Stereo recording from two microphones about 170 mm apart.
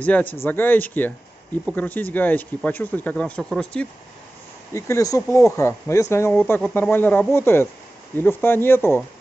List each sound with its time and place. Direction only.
0.0 s speech: 10° left (ahead or behind)
4.7 s speech: 15° left (ahead or behind)